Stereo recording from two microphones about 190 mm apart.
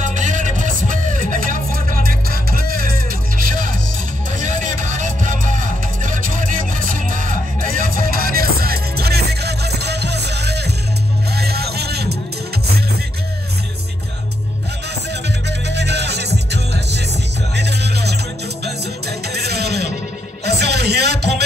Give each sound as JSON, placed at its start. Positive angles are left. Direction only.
{"t": 0.0, "sound": "music", "side_deg": -40}
{"t": 15.2, "sound": "music", "side_deg": -65}
{"t": 17.6, "sound": "music", "side_deg": -60}